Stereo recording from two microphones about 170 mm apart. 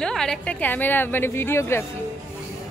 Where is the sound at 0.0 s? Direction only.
5° left (ahead or behind).